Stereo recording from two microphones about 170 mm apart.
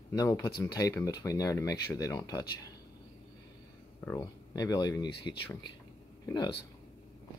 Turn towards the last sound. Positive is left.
turn(degrees=25)  # may be behind; listen again after turning